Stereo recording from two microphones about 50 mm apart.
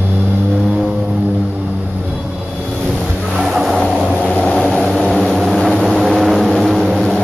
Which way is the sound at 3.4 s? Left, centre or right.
Centre.